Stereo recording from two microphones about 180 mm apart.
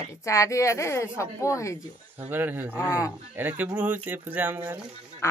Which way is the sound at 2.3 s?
10° right (ahead or behind).